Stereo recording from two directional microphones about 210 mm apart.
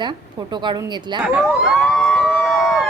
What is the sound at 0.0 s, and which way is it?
A woman's voice, 20° right (ahead or behind).